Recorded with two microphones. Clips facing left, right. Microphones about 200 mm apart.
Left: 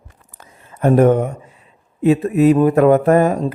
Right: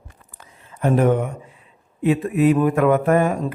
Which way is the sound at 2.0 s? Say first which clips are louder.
Left 4 dB; 40° left (ahead or behind).